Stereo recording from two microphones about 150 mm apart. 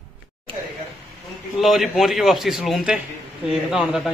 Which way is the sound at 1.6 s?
Centre (ahead or behind).